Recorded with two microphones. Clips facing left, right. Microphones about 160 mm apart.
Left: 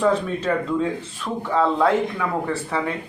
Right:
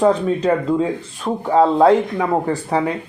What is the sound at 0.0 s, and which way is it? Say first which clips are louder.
A man's voice: right 5 dB; 35° right (ahead or behind).